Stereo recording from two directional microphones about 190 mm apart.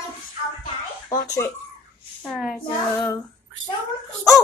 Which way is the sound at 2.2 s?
Centre (ahead or behind).